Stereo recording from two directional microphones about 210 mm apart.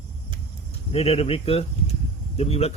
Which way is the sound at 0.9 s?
30° left (ahead or behind).